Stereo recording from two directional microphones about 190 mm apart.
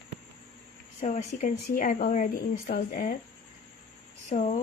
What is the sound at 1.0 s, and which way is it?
Speech, 40° left (ahead or behind).